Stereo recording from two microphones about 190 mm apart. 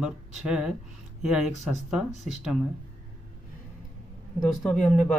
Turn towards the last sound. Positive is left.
turn(degrees=5)  # may be behind; listen again after turning